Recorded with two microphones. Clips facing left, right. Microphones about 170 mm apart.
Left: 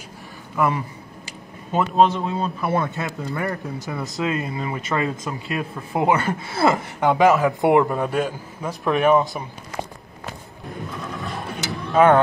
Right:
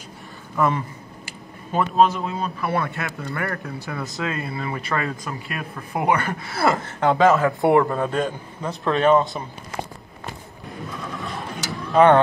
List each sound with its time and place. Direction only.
0.6 s a sound: 10° left (ahead or behind)
2.1 s a man's voice: 25° left (ahead or behind)
9.2 s speech: 20° right (ahead or behind)
11.1 s vehicle: centre (ahead or behind)